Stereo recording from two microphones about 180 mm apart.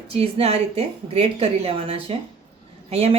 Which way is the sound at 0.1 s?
35° right (ahead or behind).